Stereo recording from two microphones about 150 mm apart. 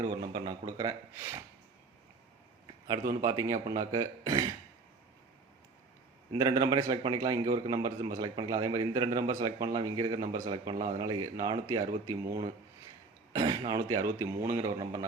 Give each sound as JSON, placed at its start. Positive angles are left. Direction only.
{"t": 0.0, "sound": "a man's voice", "side_deg": -25}
{"t": 3.1, "sound": "a man's voice", "side_deg": -25}
{"t": 6.3, "sound": "a man's voice", "side_deg": -25}